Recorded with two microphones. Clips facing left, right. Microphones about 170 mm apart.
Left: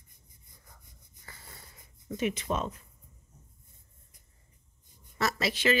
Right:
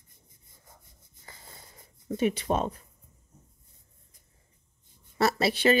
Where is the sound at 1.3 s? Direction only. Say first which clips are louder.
Right 1 dB; 20° right (ahead or behind).